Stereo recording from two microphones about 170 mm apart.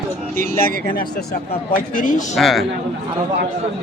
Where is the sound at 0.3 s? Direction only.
60° left (ahead or behind).